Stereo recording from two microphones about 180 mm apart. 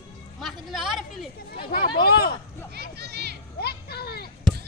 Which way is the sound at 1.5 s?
60° left (ahead or behind).